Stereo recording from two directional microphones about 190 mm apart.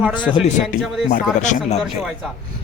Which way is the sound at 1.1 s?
40° left (ahead or behind).